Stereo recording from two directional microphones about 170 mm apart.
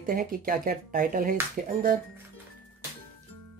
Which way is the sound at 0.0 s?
60° right (ahead or behind).